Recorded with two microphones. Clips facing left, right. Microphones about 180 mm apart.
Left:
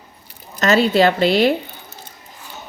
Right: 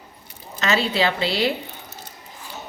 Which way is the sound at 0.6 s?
45° left (ahead or behind).